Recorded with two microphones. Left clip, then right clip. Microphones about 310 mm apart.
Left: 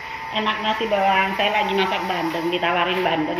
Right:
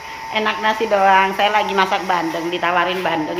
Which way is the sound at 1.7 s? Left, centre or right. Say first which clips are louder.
Right 5 dB; centre.